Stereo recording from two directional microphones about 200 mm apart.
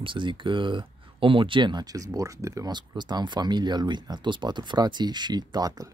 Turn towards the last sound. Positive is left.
turn(degrees=-20)  # may be behind; listen again after turning